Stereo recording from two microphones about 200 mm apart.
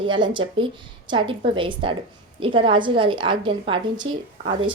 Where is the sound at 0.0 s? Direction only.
25° right (ahead or behind).